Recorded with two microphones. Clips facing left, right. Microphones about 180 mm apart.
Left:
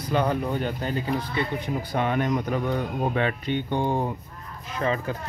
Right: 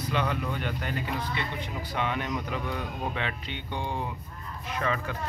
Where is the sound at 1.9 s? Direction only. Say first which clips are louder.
Left 6 dB; 45° left (ahead or behind).